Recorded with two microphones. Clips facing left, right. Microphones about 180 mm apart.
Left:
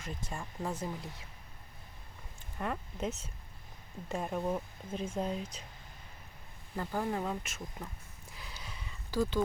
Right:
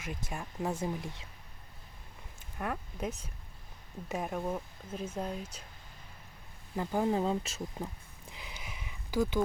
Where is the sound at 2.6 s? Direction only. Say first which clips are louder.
Even; 5° right (ahead or behind).